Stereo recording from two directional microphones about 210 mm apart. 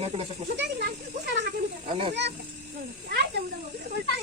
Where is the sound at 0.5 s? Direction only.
50° right (ahead or behind).